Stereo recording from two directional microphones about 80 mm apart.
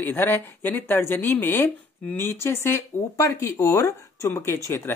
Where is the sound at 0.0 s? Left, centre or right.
Left.